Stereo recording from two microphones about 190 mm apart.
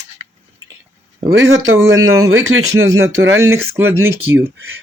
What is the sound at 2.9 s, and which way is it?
Speech, 15° right (ahead or behind).